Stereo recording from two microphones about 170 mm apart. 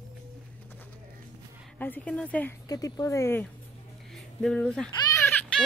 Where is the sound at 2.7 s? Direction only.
20° left (ahead or behind).